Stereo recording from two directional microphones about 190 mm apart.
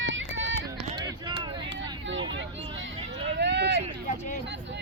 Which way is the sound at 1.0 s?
25° right (ahead or behind).